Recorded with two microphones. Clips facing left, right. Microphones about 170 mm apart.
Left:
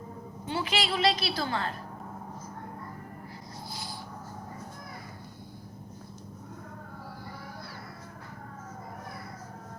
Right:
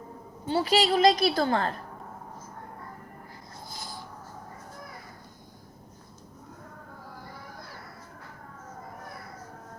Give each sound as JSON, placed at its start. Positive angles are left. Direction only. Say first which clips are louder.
{"t": 0.4, "sound": "a woman's voice", "louder": "right 7 dB", "side_deg": -35}
{"t": 3.7, "sound": "rub", "louder": "left 1 dB", "side_deg": -45}